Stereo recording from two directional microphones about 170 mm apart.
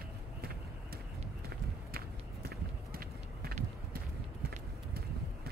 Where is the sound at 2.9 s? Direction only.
60° right (ahead or behind).